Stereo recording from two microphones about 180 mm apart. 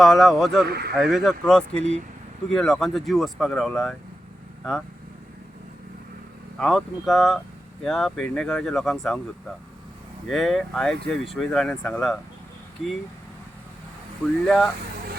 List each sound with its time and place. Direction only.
0.0 s speech: centre (ahead or behind)
0.7 s speech: 60° right (ahead or behind)
0.9 s speech: centre (ahead or behind)
6.6 s speech: centre (ahead or behind)
10.2 s speech: centre (ahead or behind)
14.4 s speech: centre (ahead or behind)